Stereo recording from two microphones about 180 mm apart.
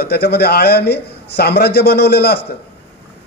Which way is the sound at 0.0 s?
60° left (ahead or behind).